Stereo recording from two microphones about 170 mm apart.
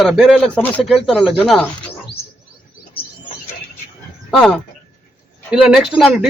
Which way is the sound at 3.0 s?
65° left (ahead or behind).